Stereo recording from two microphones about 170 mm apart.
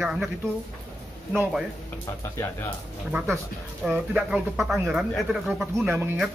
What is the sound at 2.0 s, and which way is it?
Speech, 15° left (ahead or behind).